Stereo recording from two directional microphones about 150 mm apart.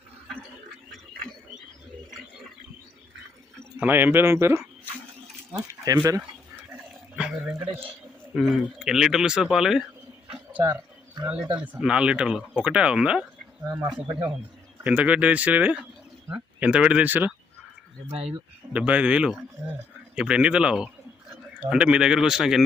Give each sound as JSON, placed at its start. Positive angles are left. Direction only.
{"t": 3.6, "sound": "speech", "side_deg": -15}
{"t": 7.2, "sound": "speech", "side_deg": -5}
{"t": 10.2, "sound": "a sound", "side_deg": -5}
{"t": 11.6, "sound": "speech", "side_deg": -10}
{"t": 14.1, "sound": "speech", "side_deg": -30}
{"t": 14.8, "sound": "speech", "side_deg": -10}
{"t": 18.1, "sound": "speech", "side_deg": -45}
{"t": 18.7, "sound": "speech", "side_deg": -10}